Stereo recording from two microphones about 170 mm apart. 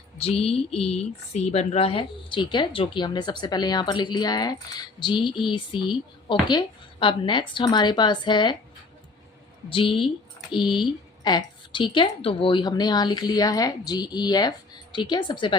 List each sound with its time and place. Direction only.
0.2 s speech: 35° left (ahead or behind)
9.6 s a woman's voice: 30° left (ahead or behind)